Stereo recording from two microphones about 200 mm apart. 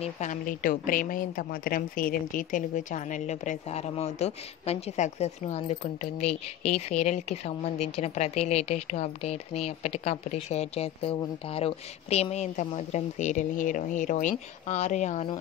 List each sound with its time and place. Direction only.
0.0 s a woman's voice: 40° left (ahead or behind)